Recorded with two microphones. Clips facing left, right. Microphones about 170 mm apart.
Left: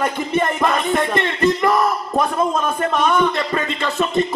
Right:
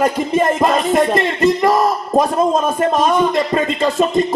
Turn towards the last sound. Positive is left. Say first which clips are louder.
# right 5 dB
turn(degrees=-35)  # may be behind; listen again after turning